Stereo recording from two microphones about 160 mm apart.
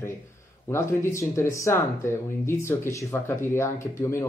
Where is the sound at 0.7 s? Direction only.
15° left (ahead or behind).